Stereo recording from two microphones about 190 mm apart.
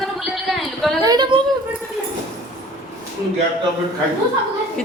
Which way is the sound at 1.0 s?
20° right (ahead or behind).